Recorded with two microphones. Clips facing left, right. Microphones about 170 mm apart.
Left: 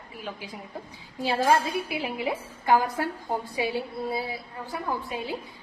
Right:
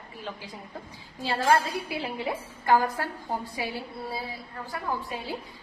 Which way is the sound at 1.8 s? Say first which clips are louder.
Left 2 dB; 15° left (ahead or behind).